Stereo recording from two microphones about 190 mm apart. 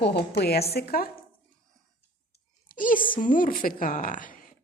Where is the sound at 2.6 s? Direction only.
45° left (ahead or behind).